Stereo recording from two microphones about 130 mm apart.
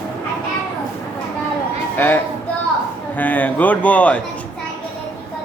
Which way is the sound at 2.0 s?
15° left (ahead or behind).